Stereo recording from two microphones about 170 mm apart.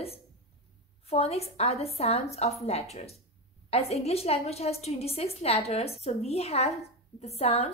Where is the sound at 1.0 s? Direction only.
35° left (ahead or behind).